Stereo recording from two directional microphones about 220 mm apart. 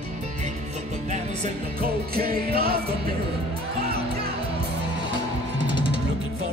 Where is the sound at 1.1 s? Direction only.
35° right (ahead or behind).